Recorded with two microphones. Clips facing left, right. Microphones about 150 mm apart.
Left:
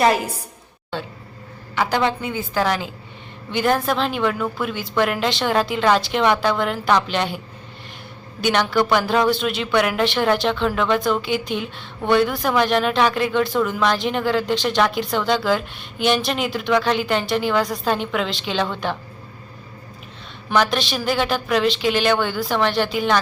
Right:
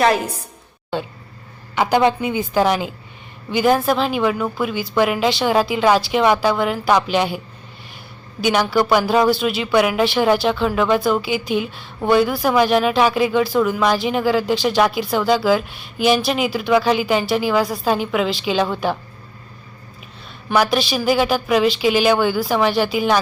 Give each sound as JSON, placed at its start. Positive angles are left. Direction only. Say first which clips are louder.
{"t": 1.7, "sound": "a woman's voice", "louder": "right 4 dB", "side_deg": -15}
{"t": 20.5, "sound": "speech", "louder": "right 2 dB", "side_deg": -5}